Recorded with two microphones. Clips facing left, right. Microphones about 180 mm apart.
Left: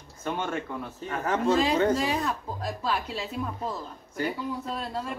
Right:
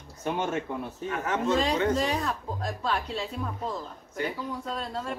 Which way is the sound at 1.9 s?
5° left (ahead or behind).